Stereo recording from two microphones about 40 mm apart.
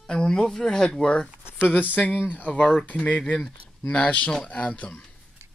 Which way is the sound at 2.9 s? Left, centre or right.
Left.